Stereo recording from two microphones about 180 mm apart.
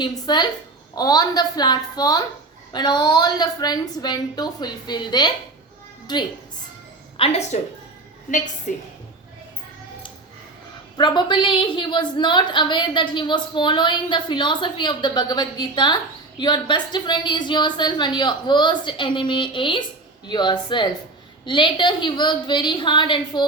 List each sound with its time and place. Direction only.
0.0 s a woman's voice: 25° left (ahead or behind)
7.2 s a woman's voice: 35° left (ahead or behind)
8.3 s a woman's voice: 50° left (ahead or behind)
10.9 s a woman's voice: 25° left (ahead or behind)